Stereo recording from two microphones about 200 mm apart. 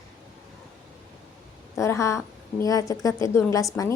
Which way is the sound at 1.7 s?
15° left (ahead or behind).